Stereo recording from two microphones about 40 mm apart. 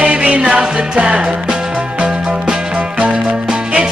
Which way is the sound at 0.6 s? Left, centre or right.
Right.